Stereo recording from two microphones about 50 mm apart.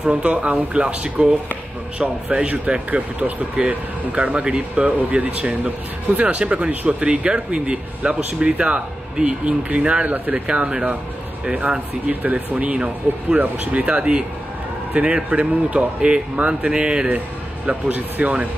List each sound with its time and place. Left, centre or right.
0.0 s speech: right
10.3 s speech: right
12.1 s speech: right
15.2 s speech: right
16.7 s speech: centre
17.6 s speech: right